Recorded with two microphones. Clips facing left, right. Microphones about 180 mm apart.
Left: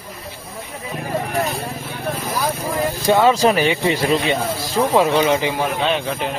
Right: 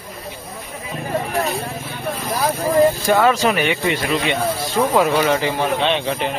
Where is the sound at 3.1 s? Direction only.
20° left (ahead or behind).